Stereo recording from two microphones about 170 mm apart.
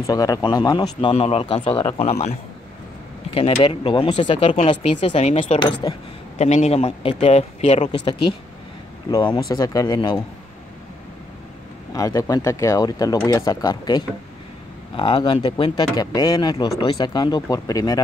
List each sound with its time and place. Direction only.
0.0 s speech: 20° left (ahead or behind); by 2.3 s 40° left (ahead or behind)
3.3 s speech: 35° left (ahead or behind)
9.1 s speech: 25° left (ahead or behind)
11.9 s speech: 20° left (ahead or behind)